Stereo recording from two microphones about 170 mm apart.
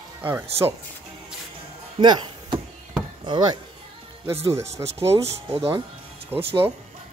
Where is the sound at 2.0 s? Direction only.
25° right (ahead or behind).